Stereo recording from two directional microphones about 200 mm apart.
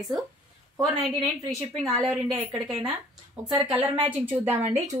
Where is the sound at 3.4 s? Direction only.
Centre (ahead or behind).